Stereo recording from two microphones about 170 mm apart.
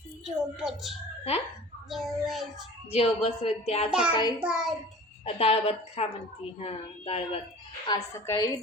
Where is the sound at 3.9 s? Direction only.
5° right (ahead or behind).